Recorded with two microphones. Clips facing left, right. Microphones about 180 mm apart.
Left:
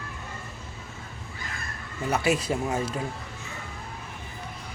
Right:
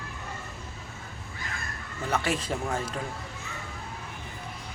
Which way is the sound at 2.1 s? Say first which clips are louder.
Left 4 dB; 10° left (ahead or behind).